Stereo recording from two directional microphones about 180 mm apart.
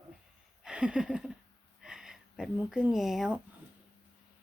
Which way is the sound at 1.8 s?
5° right (ahead or behind).